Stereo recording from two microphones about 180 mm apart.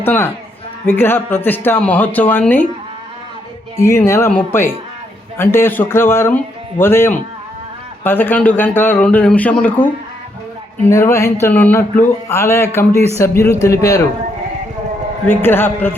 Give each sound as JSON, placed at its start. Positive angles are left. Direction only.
{"t": 0.0, "sound": "speech", "side_deg": 10}
{"t": 3.8, "sound": "speech", "side_deg": 15}
{"t": 15.3, "sound": "speech", "side_deg": 10}